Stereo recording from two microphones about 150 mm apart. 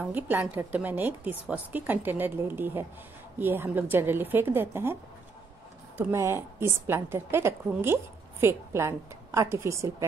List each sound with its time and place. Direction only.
0.0 s a woman's voice: 10° right (ahead or behind)
5.9 s a woman's voice: 15° right (ahead or behind)